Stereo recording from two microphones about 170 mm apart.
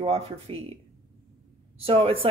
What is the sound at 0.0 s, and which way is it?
Speech, 35° right (ahead or behind).